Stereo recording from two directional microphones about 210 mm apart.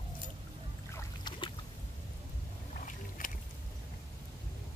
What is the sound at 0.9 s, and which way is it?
Boat, 20° left (ahead or behind).